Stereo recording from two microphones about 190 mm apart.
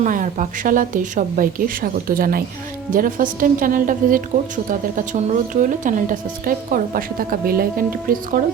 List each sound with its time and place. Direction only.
0.0 s a woman's voice: 40° right (ahead or behind)